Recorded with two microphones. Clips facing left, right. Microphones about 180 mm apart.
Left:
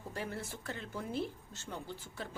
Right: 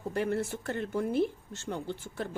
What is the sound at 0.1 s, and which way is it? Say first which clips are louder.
A woman's voice: right 11 dB; 65° right (ahead or behind).